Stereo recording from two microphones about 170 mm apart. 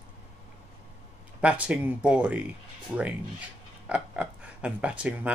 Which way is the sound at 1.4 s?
10° right (ahead or behind).